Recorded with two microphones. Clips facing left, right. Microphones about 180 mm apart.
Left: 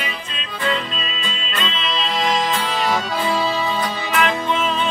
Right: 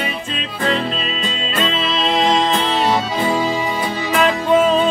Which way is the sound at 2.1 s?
25° right (ahead or behind).